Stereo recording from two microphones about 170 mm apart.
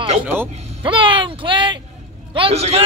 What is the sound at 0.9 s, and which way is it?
A man's voice, 30° right (ahead or behind).